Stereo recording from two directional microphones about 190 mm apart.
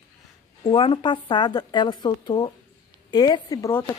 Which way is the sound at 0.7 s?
30° left (ahead or behind).